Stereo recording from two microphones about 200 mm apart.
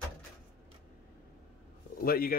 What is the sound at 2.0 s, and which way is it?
Speech, 45° left (ahead or behind).